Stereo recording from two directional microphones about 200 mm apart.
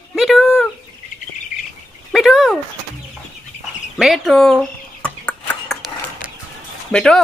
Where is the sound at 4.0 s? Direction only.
Centre (ahead or behind).